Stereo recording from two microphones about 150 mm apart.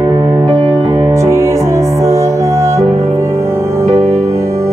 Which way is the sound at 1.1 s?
20° right (ahead or behind).